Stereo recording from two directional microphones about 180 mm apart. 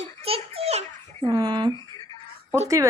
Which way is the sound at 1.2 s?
20° right (ahead or behind).